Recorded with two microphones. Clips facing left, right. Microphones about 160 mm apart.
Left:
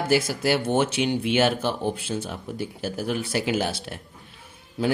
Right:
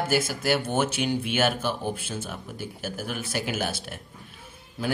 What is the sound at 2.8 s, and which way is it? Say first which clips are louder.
Speech: left 5 dB; 25° left (ahead or behind).